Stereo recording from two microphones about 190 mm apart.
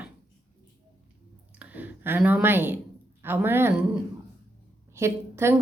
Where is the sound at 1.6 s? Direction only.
10° right (ahead or behind).